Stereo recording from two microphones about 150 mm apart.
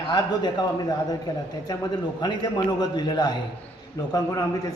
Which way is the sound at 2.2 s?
25° left (ahead or behind).